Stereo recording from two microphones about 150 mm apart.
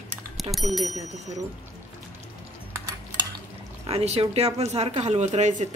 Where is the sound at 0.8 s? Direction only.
50° right (ahead or behind).